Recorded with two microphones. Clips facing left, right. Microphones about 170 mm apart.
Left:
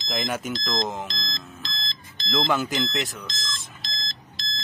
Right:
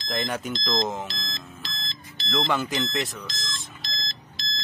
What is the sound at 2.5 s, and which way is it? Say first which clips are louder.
Beep: left 2 dB; centre (ahead or behind).